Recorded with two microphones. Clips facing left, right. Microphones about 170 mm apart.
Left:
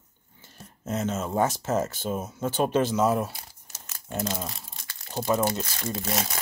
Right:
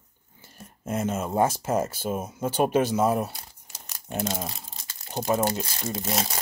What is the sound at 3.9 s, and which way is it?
Crumpling, 20° right (ahead or behind).